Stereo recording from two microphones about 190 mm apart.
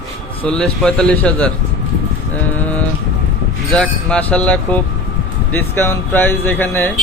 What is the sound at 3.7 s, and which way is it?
Speech, 5° left (ahead or behind).